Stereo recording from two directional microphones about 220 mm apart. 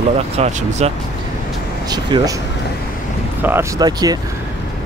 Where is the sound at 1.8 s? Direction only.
20° right (ahead or behind).